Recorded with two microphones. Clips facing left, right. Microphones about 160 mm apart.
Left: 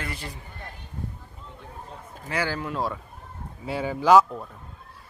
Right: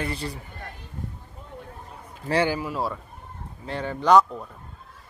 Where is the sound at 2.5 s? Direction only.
5° right (ahead or behind).